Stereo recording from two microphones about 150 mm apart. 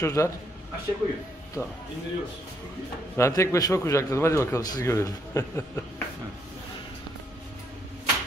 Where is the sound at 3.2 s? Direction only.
20° left (ahead or behind).